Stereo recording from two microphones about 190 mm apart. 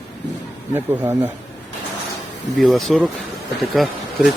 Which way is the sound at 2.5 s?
Centre (ahead or behind).